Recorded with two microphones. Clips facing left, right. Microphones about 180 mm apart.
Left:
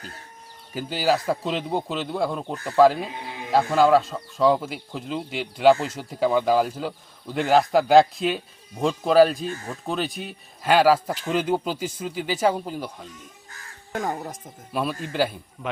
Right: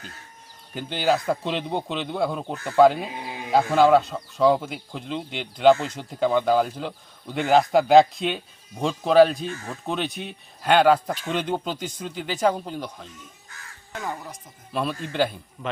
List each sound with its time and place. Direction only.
0.7 s speech: 5° left (ahead or behind)
13.9 s speech: 45° left (ahead or behind)
14.7 s speech: 5° left (ahead or behind)